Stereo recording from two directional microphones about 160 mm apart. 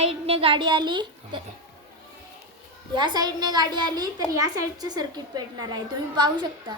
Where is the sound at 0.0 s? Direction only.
35° right (ahead or behind).